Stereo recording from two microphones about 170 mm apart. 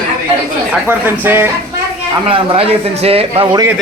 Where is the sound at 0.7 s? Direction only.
10° right (ahead or behind).